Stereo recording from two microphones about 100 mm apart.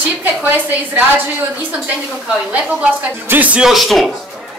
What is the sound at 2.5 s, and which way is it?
A woman's voice, 10° right (ahead or behind).